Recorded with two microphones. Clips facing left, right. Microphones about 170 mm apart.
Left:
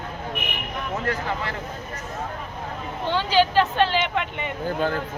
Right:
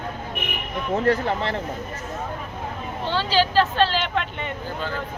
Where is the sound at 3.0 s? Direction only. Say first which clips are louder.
Left 2 dB; 15° left (ahead or behind).